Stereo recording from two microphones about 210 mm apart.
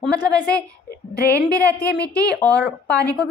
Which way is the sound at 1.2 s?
50° left (ahead or behind).